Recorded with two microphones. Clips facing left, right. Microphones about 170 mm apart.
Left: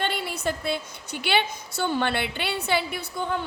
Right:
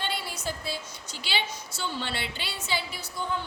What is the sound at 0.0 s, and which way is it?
A woman's voice, 60° left (ahead or behind).